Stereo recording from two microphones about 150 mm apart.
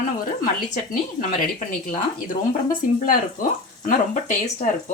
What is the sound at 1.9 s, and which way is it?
Speech, 65° left (ahead or behind).